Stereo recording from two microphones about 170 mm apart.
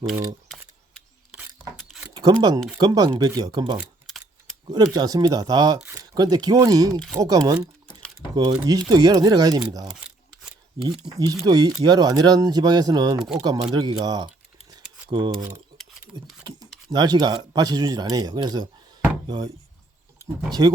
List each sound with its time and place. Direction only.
2.1 s speech: 25° right (ahead or behind)
11.3 s speech: 20° right (ahead or behind)
13.1 s speech: 5° right (ahead or behind)
13.4 s speech: 25° right (ahead or behind)
16.4 s a sound: 25° right (ahead or behind)
16.9 s speech: 25° right (ahead or behind)
20.5 s speech: 20° right (ahead or behind)